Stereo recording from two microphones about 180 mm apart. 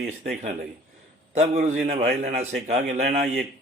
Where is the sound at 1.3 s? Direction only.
40° right (ahead or behind).